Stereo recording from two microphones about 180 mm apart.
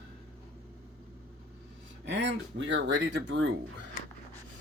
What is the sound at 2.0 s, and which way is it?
Speech, 80° right.